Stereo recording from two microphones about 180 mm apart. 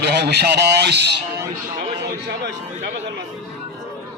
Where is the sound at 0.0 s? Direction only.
65° right (ahead or behind).